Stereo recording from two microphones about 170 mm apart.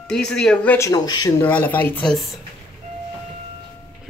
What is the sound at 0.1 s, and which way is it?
Speech, 5° left (ahead or behind).